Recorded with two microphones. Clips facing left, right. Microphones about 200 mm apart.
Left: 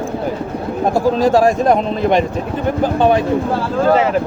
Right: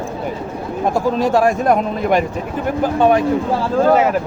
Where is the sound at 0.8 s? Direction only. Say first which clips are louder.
Left 3 dB; 35° left (ahead or behind).